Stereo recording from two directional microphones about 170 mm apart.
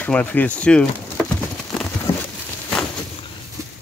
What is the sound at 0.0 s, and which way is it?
Speech, 10° left (ahead or behind).